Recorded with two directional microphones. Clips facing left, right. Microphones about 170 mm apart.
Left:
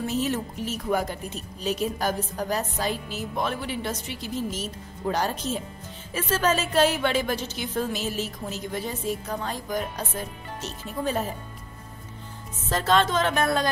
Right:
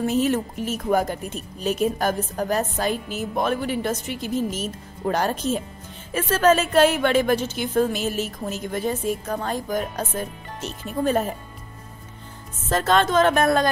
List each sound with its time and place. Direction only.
0.0 s a woman's voice: 55° right (ahead or behind)
12.6 s a woman's voice: 50° right (ahead or behind)